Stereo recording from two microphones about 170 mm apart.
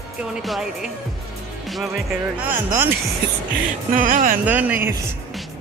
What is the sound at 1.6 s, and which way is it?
Music, centre (ahead or behind).